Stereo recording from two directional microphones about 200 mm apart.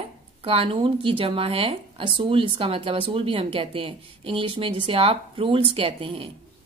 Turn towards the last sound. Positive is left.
turn(degrees=-25)  # may be behind; listen again after turning